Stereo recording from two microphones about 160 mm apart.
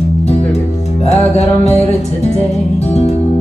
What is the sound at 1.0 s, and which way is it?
Music, 40° left (ahead or behind).